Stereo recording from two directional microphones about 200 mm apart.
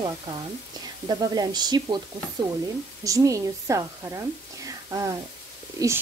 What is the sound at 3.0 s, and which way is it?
Speech, 15° right (ahead or behind).